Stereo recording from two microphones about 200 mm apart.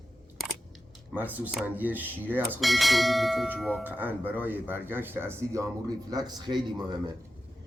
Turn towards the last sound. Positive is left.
turn(degrees=-20)  # may be behind; listen again after turning